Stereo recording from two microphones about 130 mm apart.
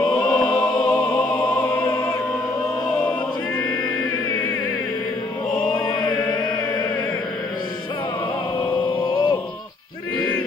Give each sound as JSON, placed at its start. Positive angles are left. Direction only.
{"t": 0.1, "sound": "music", "side_deg": 5}
{"t": 0.5, "sound": "music", "side_deg": 35}
{"t": 5.6, "sound": "mantra", "side_deg": 35}
{"t": 8.8, "sound": "music", "side_deg": 40}
{"t": 10.1, "sound": "a sound", "side_deg": 15}